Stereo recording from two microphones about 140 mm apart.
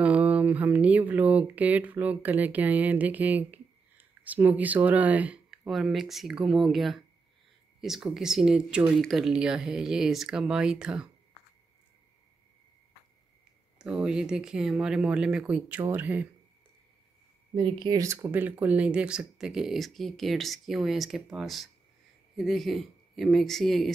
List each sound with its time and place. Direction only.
0.0 s speech: 10° right (ahead or behind)
13.7 s speech: 5° right (ahead or behind)
17.6 s speech: 35° right (ahead or behind)
18.0 s speech: 15° right (ahead or behind); by 23.9 s centre (ahead or behind)